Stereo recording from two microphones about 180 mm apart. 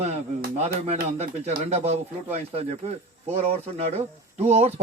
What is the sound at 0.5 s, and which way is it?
Speech, 35° right (ahead or behind).